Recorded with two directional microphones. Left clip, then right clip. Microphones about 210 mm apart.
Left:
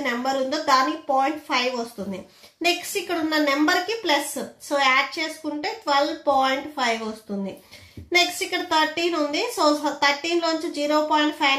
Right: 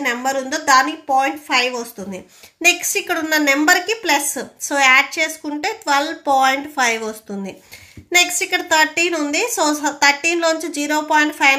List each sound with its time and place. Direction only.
0.0 s a woman's voice: 35° right (ahead or behind)